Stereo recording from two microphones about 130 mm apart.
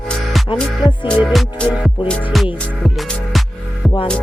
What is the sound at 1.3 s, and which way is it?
Music, centre (ahead or behind).